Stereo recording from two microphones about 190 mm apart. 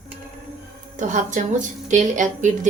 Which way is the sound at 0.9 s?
40° right (ahead or behind).